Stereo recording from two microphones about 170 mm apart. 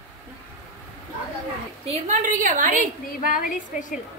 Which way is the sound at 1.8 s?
50° right (ahead or behind).